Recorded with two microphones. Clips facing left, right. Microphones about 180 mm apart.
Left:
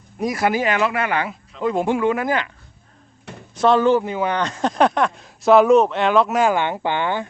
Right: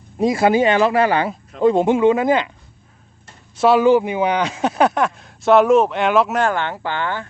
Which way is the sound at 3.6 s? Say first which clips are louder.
Right 2 dB; 10° right (ahead or behind).